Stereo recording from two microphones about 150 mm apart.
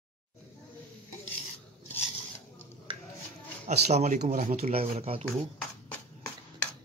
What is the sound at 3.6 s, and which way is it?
Speech, 50° right (ahead or behind).